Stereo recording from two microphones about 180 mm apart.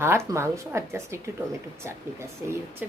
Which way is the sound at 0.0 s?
15° right (ahead or behind).